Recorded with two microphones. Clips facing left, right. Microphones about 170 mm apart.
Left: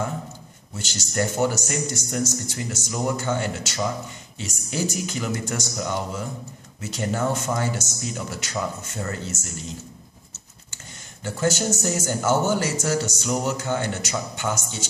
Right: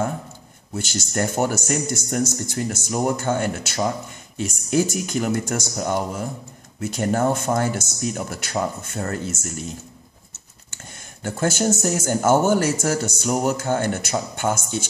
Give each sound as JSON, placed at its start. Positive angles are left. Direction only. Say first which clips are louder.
{"t": 0.7, "sound": "speech", "louder": "right 2 dB", "side_deg": -50}
{"t": 11.2, "sound": "speech", "louder": "right 2 dB", "side_deg": -50}